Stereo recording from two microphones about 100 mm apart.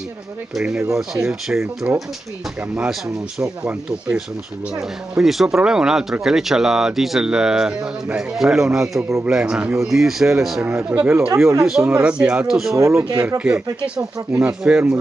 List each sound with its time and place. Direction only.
0.6 s speech: 5° right (ahead or behind)
5.1 s speech: 5° right (ahead or behind)
10.9 s speech: 20° right (ahead or behind)
11.6 s speech: 5° right (ahead or behind)
12.7 s speech: 30° right (ahead or behind)
13.4 s speech: 5° right (ahead or behind)